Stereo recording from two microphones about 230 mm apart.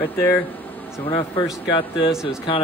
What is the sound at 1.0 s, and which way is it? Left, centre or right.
Speech, left.